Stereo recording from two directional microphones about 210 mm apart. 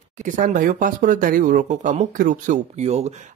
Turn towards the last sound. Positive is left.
turn(degrees=-30)  # may be behind; listen again after turning